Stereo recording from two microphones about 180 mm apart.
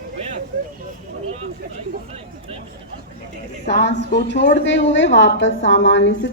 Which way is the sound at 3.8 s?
75° left (ahead or behind).